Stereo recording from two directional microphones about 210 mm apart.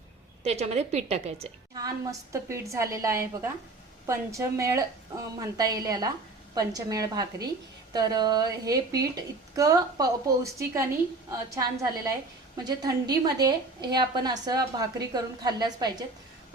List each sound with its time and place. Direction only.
0.4 s a woman's voice: 30° right (ahead or behind)
1.7 s a woman's voice: 15° right (ahead or behind)